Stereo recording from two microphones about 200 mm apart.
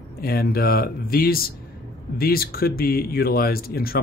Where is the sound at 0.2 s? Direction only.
50° left (ahead or behind).